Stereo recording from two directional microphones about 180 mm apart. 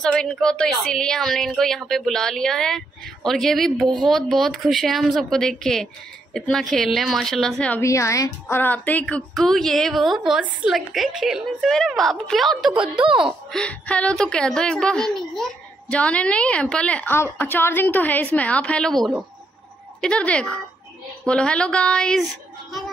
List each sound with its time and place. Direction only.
0.0 s a woman's voice: 5° left (ahead or behind)
3.8 s speech: 25° right (ahead or behind)
4.1 s a woman's voice: centre (ahead or behind)
7.8 s a woman's voice: 15° left (ahead or behind)